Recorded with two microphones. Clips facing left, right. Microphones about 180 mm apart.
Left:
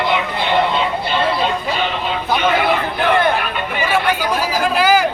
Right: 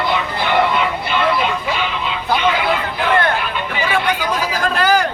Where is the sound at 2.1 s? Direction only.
50° left (ahead or behind).